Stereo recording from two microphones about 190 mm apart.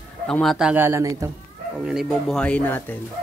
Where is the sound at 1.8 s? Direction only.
Centre (ahead or behind).